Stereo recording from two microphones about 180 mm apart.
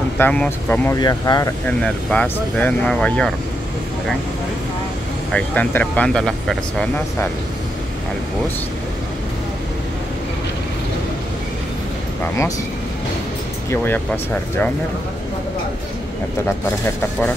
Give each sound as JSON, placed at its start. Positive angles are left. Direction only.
{"t": 0.2, "sound": "speech", "side_deg": 10}
{"t": 1.0, "sound": "speech", "side_deg": 20}
{"t": 1.7, "sound": "speech", "side_deg": 5}
{"t": 5.3, "sound": "speech", "side_deg": 5}
{"t": 12.2, "sound": "speech", "side_deg": 15}
{"t": 13.7, "sound": "speech", "side_deg": 10}